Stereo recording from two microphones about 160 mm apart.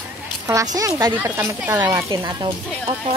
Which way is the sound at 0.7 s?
20° right (ahead or behind).